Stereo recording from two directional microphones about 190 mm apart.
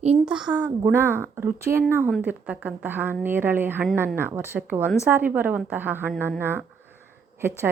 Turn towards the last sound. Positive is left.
turn(degrees=-10)  # may be behind; listen again after turning